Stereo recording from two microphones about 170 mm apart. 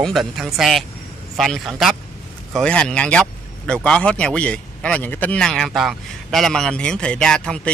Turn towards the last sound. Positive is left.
turn(degrees=5)  # may be behind; listen again after turning